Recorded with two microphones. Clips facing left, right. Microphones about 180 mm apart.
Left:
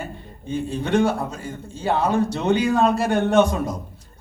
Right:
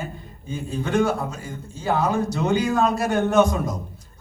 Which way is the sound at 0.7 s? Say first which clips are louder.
Left 1 dB; 30° left (ahead or behind).